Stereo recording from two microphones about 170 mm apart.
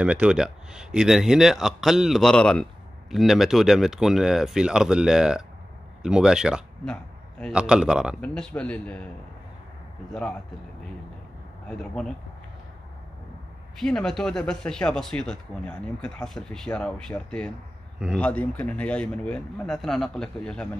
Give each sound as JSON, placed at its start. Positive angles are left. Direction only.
{"t": 0.0, "sound": "a man's voice", "side_deg": -5}
{"t": 13.7, "sound": "speech", "side_deg": 5}
{"t": 17.9, "sound": "speech", "side_deg": -5}
{"t": 18.2, "sound": "a man's voice", "side_deg": 10}